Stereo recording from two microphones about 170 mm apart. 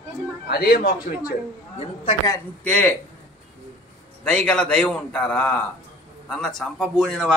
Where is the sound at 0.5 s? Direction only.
65° left (ahead or behind).